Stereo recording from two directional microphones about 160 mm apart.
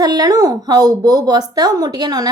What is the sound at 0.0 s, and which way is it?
Speech, 25° right (ahead or behind).